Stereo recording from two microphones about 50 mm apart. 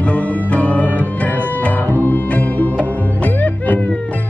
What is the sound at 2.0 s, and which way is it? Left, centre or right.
Music, left.